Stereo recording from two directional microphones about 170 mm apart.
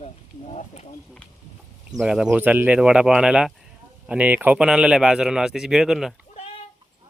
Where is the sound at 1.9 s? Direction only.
5° right (ahead or behind).